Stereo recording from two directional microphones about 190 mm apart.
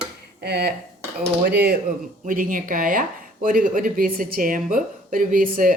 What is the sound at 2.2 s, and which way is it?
Speech, 45° right (ahead or behind).